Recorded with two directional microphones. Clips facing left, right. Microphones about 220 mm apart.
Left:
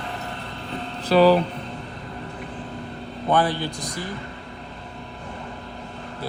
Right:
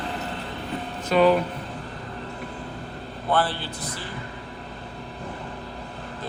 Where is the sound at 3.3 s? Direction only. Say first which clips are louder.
Left 3 dB; 15° left (ahead or behind).